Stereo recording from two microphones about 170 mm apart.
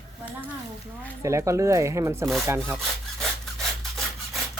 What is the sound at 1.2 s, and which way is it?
Speech, 15° right (ahead or behind).